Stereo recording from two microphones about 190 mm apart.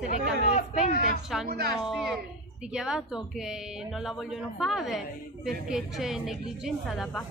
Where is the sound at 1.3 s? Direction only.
Centre (ahead or behind).